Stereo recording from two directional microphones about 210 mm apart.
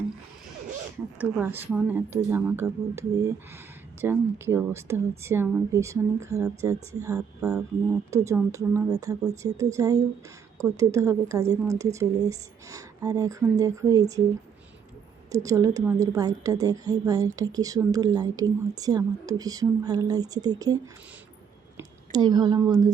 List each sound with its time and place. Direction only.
1.2 s a woman's voice: 10° right (ahead or behind)
7.2 s speech: 5° right (ahead or behind)
8.1 s a woman's voice: 15° right (ahead or behind)
15.3 s a woman's voice: 15° right (ahead or behind)
21.8 s a woman's voice: 20° right (ahead or behind)